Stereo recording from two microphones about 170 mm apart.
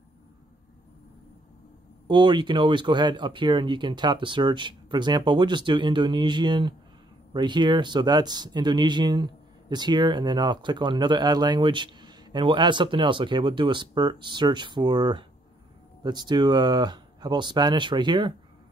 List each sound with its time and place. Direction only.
2.0 s speech: 25° right (ahead or behind)